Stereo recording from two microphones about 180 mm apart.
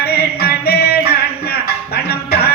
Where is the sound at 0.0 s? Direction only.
60° left (ahead or behind).